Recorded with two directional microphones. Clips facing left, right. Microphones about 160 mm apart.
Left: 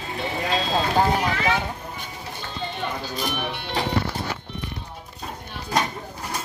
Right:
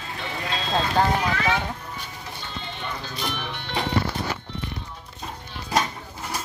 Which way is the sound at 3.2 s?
15° left (ahead or behind).